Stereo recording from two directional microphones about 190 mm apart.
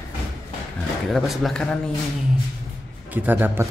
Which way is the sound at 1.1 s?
Centre (ahead or behind).